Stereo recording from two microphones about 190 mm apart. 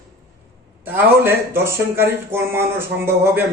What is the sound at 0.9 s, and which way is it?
Speech, 10° right (ahead or behind).